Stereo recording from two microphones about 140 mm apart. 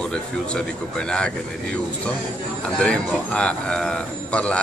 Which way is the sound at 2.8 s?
10° left (ahead or behind).